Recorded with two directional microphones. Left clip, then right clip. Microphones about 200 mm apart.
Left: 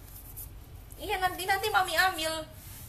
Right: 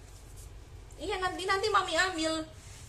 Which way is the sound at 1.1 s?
10° right (ahead or behind).